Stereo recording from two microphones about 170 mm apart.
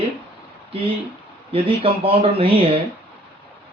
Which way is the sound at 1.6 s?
35° right (ahead or behind).